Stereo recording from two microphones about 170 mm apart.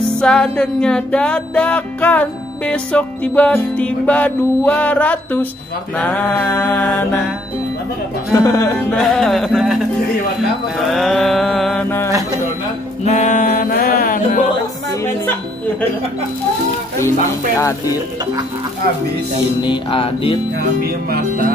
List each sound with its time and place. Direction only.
0.2 s music: 5° left (ahead or behind)
8.3 s music: 20° left (ahead or behind)
8.9 s a sound: centre (ahead or behind)
10.9 s a sound: centre (ahead or behind)
13.0 s music: 45° left (ahead or behind)
17.6 s music: 20° left (ahead or behind)
19.6 s music: 30° left (ahead or behind)
20.5 s speech: 65° right (ahead or behind)